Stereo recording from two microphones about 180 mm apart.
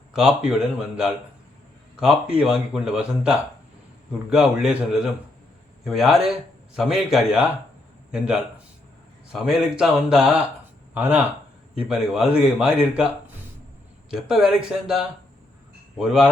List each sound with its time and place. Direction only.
0.1 s speech: 5° right (ahead or behind)
9.3 s speech: centre (ahead or behind)
14.1 s speech: centre (ahead or behind)